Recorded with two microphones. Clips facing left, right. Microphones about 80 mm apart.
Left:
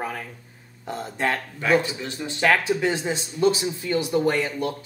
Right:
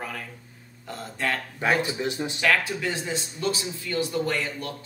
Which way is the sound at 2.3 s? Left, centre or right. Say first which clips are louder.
Left 5 dB; left.